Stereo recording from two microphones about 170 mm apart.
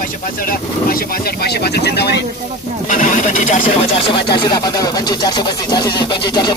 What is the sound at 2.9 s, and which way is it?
Speech, 50° left (ahead or behind).